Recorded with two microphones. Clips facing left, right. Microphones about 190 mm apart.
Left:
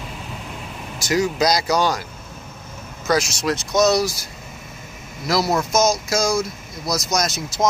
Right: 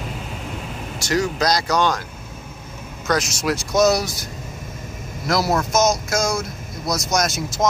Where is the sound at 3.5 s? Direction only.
5° right (ahead or behind).